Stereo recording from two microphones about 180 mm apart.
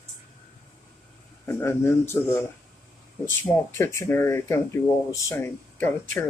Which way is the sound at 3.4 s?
15° left (ahead or behind).